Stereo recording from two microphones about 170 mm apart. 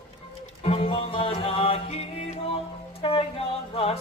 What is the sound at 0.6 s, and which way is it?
Music, 35° left (ahead or behind).